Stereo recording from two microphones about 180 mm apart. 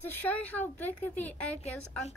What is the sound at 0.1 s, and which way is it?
A woman's voice, 10° left (ahead or behind).